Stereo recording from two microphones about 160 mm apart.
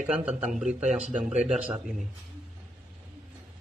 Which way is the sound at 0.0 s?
5° right (ahead or behind).